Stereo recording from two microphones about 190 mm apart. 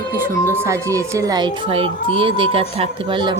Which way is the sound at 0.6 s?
15° right (ahead or behind).